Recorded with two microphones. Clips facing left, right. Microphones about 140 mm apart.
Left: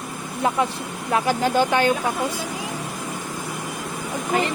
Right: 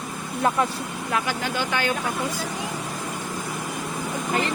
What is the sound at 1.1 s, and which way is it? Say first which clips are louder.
Speech: left 7 dB; 35° left (ahead or behind).